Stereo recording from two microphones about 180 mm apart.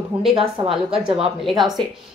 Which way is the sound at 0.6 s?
30° right (ahead or behind).